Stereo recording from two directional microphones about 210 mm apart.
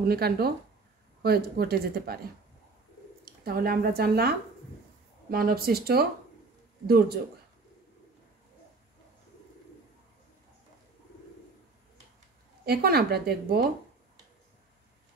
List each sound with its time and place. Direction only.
0.1 s a woman's voice: 50° right (ahead or behind)
3.4 s a woman's voice: 45° right (ahead or behind)
12.6 s a woman's voice: 50° right (ahead or behind)